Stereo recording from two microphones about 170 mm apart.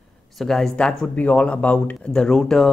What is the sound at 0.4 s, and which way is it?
Speech, centre (ahead or behind).